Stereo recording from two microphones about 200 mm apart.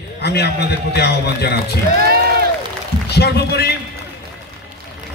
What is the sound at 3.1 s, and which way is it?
Speech, 55° left (ahead or behind).